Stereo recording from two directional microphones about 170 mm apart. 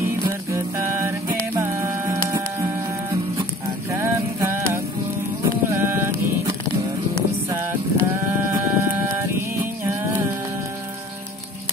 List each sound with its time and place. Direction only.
0.0 s music: 15° right (ahead or behind)
3.9 s vehicle: 15° right (ahead or behind)
5.4 s a sound: 15° right (ahead or behind)
7.4 s sheep: 15° right (ahead or behind)